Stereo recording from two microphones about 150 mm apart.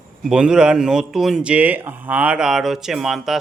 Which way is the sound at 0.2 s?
5° right (ahead or behind).